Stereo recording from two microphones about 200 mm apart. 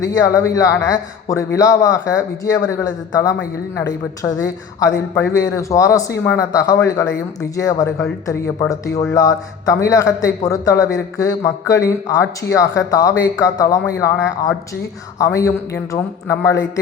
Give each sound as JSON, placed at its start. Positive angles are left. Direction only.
{"t": 0.0, "sound": "speech", "side_deg": 15}
{"t": 9.1, "sound": "speech", "side_deg": 15}